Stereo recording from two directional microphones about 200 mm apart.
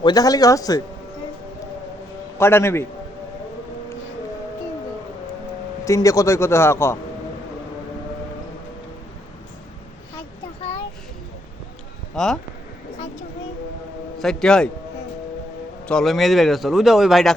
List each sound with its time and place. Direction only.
0.0 s speech: 20° left (ahead or behind)
2.4 s speech: 10° left (ahead or behind)
5.8 s speech: 15° left (ahead or behind)
12.1 s speech: 5° left (ahead or behind)
14.2 s speech: 5° left (ahead or behind)
15.9 s speech: centre (ahead or behind)